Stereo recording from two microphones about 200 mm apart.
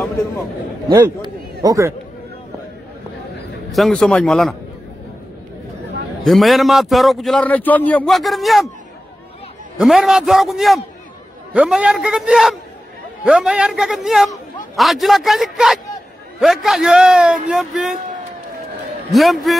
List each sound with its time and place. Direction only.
1.2 s a sound: 15° right (ahead or behind)
3.7 s a man's voice: centre (ahead or behind)
6.2 s a man's voice: centre (ahead or behind)
9.8 s a man's voice: 5° right (ahead or behind)
19.1 s a man's voice: centre (ahead or behind)